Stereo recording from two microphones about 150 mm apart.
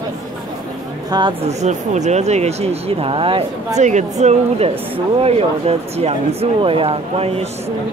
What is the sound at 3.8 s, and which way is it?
Speech, 50° right (ahead or behind).